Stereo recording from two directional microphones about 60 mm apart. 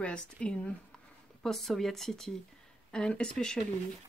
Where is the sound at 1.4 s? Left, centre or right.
Centre.